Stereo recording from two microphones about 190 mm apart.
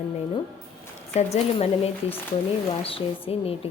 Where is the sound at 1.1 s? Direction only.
35° left (ahead or behind).